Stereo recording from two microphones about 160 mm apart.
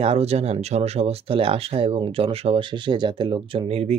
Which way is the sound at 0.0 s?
40° right (ahead or behind).